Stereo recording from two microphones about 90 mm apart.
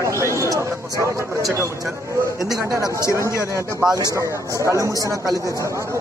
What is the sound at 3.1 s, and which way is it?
Speech, 35° right (ahead or behind).